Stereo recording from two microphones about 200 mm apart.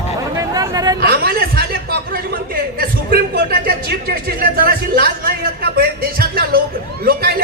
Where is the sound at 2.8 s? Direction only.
50° right (ahead or behind).